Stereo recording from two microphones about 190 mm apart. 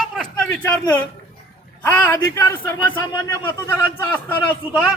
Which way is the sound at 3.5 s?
10° left (ahead or behind).